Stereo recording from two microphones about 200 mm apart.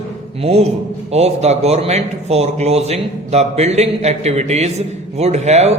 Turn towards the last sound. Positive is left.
turn(degrees=-35)  # may be behind; listen again after turning